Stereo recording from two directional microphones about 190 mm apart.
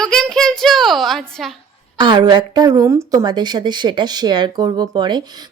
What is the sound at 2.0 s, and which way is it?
A woman's voice, 25° right (ahead or behind).